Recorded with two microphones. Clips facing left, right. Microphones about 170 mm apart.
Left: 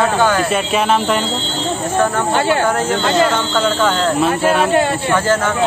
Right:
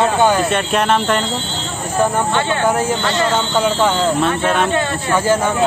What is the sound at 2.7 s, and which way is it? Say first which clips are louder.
Speech: left 1 dB; 10° right (ahead or behind).